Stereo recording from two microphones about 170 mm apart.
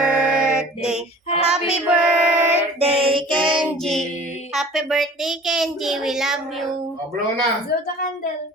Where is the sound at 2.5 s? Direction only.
35° right (ahead or behind).